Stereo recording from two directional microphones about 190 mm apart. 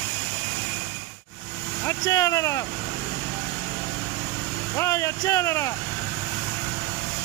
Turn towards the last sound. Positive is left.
turn(degrees=15)  # may be behind; listen again after turning